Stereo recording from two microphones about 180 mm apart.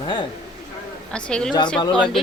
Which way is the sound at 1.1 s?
5° left (ahead or behind).